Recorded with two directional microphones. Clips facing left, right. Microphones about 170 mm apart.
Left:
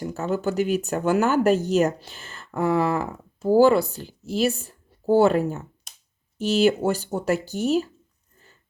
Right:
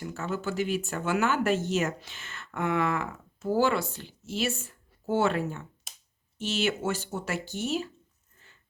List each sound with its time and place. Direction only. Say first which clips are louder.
0.0 s speech: left 7 dB; 40° left (ahead or behind)